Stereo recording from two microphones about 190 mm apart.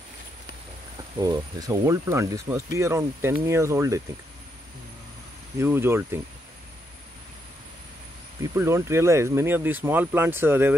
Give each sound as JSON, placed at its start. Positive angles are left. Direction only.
{"t": 1.1, "sound": "speech", "side_deg": -20}
{"t": 5.6, "sound": "speech", "side_deg": -10}
{"t": 8.5, "sound": "speech", "side_deg": -15}